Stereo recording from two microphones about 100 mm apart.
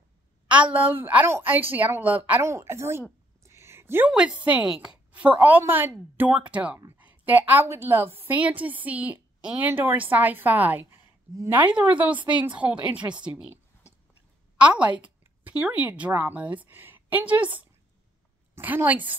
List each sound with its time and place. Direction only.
0.5 s a woman's voice: 15° right (ahead or behind)
2.4 s a woman's voice: 25° right (ahead or behind)
3.4 s a sound: 25° right (ahead or behind)
4.1 s a woman's voice: 10° right (ahead or behind)
14.6 s a woman's voice: 15° right (ahead or behind)